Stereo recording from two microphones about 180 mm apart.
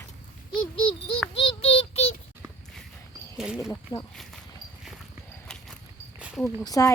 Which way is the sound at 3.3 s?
5° right (ahead or behind).